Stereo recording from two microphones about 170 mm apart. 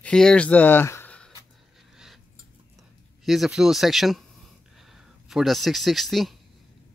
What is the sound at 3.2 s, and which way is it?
Speech, centre (ahead or behind).